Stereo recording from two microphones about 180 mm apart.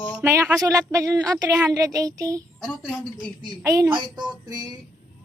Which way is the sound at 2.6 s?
5° right (ahead or behind).